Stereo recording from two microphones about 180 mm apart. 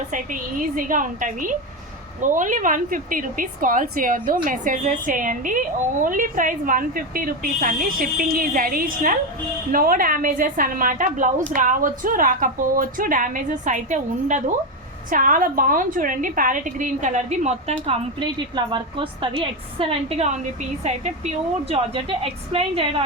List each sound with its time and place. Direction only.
0.8 s a woman's voice: 45° right (ahead or behind)
18.5 s a woman's voice: 25° right (ahead or behind)